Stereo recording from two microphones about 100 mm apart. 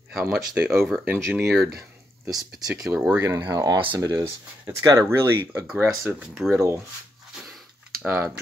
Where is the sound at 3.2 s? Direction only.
35° right (ahead or behind).